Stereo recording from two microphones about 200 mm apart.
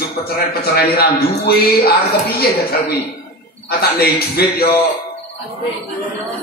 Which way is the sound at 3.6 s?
50° left (ahead or behind).